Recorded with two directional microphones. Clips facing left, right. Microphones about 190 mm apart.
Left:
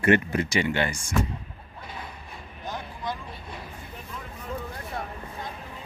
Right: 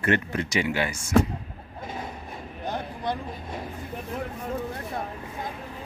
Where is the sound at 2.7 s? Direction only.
60° right (ahead or behind).